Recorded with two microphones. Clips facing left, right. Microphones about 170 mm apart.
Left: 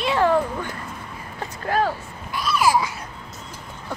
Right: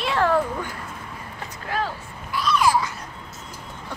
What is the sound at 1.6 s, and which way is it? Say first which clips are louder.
Speech: left 6 dB; 45° left (ahead or behind).